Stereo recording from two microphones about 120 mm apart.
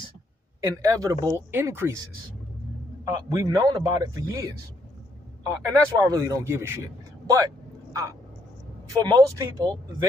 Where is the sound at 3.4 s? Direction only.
35° right (ahead or behind).